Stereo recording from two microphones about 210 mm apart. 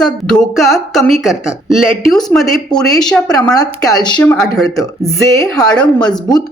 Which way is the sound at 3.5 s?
20° left (ahead or behind).